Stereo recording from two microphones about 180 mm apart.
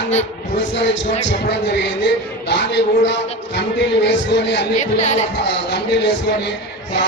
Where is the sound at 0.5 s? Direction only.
85° left.